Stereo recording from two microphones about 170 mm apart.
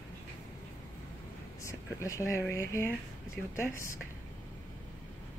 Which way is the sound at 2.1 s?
15° left (ahead or behind).